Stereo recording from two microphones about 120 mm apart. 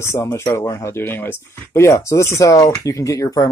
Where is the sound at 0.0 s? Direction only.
20° left (ahead or behind).